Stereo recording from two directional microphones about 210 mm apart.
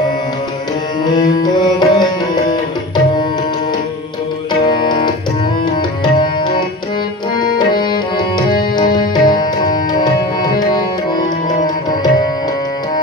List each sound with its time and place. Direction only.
1.4 s music: 20° left (ahead or behind)
4.6 s music: 20° left (ahead or behind)
7.3 s music: 20° left (ahead or behind)
9.9 s tabla: 20° left (ahead or behind)